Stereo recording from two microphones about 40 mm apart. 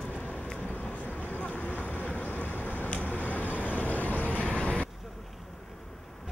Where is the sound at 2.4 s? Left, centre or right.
Left.